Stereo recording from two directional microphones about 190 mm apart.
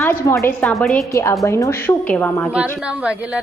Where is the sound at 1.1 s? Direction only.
15° left (ahead or behind).